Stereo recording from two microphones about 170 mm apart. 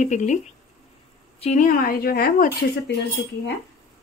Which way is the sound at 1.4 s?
45° left (ahead or behind).